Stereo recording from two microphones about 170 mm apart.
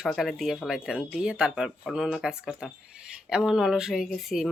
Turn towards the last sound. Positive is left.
turn(degrees=0)  # may be behind; listen again after turning